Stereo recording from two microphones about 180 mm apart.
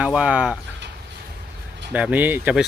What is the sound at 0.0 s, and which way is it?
Speech, 5° right (ahead or behind).